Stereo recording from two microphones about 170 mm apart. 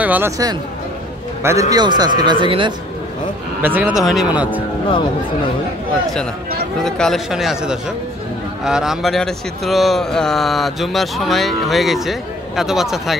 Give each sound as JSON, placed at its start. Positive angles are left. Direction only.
{"t": 0.0, "sound": "speech", "side_deg": -10}
{"t": 1.4, "sound": "a man's voice", "side_deg": -15}
{"t": 3.6, "sound": "speech", "side_deg": -10}
{"t": 6.8, "sound": "speech", "side_deg": 0}